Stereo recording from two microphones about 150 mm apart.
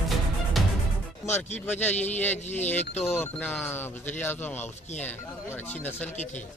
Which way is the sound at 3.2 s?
10° left (ahead or behind).